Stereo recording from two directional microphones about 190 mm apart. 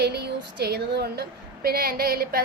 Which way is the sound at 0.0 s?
60° right (ahead or behind).